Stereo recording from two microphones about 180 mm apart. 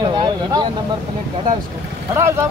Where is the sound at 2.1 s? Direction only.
15° right (ahead or behind).